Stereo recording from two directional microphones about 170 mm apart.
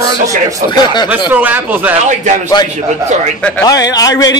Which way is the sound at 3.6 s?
20° left (ahead or behind).